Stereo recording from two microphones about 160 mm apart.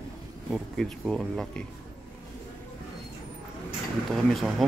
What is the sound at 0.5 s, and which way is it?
Speech, centre (ahead or behind).